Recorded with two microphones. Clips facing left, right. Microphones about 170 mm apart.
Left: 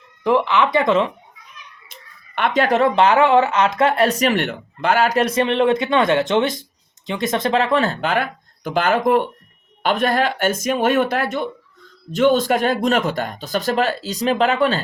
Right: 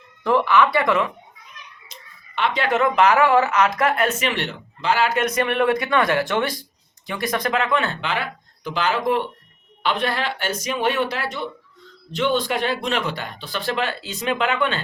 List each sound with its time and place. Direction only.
0.2 s speech: 15° left (ahead or behind)
1.9 s speech: 55° left (ahead or behind); by 14.8 s 35° left (ahead or behind)